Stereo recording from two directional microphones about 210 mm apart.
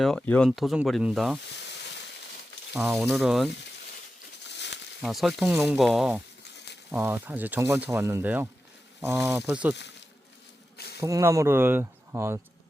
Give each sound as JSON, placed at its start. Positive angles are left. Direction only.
{"t": 0.0, "sound": "speech", "side_deg": 0}
{"t": 2.7, "sound": "speech", "side_deg": 0}
{"t": 4.5, "sound": "a sound", "side_deg": 55}
{"t": 5.0, "sound": "speech", "side_deg": 0}
{"t": 11.0, "sound": "speech", "side_deg": -15}